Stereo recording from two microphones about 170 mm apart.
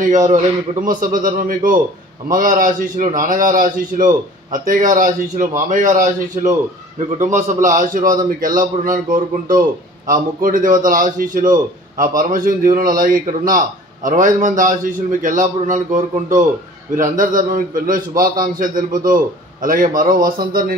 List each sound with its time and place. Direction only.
0.0 s a man's voice: 50° right (ahead or behind)